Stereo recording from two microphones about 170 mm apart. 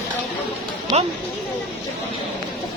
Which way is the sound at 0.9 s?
25° right (ahead or behind).